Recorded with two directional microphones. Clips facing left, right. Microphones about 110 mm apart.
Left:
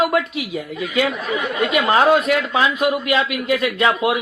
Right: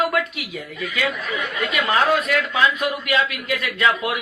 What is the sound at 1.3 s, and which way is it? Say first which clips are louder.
Speech: left 6 dB; 35° left (ahead or behind).